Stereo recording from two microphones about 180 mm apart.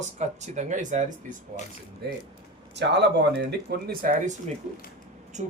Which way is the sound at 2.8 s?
70° right (ahead or behind).